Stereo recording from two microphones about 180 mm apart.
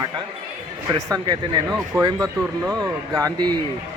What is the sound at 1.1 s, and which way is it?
Speech, 25° right (ahead or behind).